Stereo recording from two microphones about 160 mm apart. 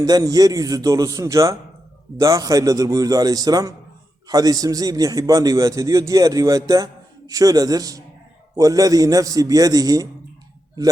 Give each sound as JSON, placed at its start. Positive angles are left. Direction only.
{"t": 0.0, "sound": "a man's voice", "side_deg": -25}